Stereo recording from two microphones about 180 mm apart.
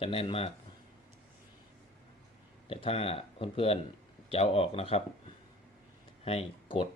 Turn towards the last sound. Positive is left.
turn(degrees=30)  # may be behind; listen again after turning